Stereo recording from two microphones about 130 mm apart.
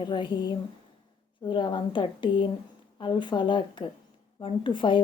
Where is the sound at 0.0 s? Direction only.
35° left (ahead or behind).